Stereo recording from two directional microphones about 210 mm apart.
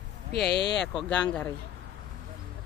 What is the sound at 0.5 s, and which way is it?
Speech, 55° left (ahead or behind).